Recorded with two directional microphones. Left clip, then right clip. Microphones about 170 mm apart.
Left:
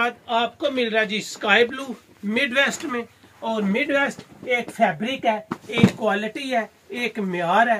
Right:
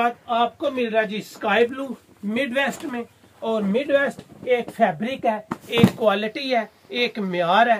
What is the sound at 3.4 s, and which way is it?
Speech, 20° right (ahead or behind).